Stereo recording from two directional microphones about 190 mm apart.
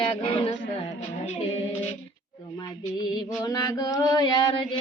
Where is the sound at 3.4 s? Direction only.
20° left (ahead or behind).